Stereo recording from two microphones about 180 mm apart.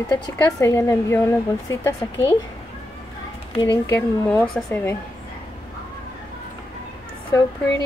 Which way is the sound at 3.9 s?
10° left (ahead or behind).